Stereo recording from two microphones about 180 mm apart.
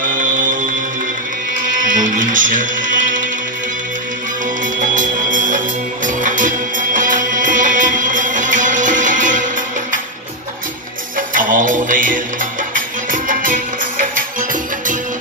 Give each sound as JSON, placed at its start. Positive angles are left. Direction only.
{"t": 2.1, "sound": "music", "side_deg": -45}
{"t": 4.7, "sound": "music", "side_deg": -45}
{"t": 11.1, "sound": "music", "side_deg": -50}